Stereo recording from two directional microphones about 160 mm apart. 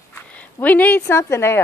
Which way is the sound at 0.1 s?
10° left (ahead or behind).